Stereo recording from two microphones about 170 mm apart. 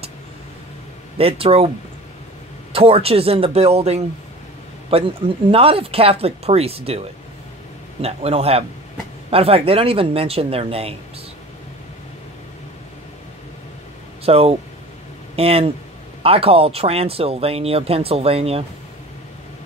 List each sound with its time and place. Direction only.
1.1 s speech: 35° right (ahead or behind)
2.7 s speech: 35° right (ahead or behind)
8.0 s speech: 35° right (ahead or behind)
14.2 s speech: 35° right (ahead or behind)